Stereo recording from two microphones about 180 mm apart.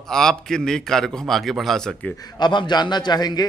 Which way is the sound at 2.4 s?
25° left (ahead or behind).